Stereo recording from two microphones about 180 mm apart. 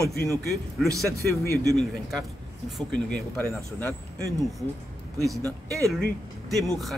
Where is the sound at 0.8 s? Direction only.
15° right (ahead or behind).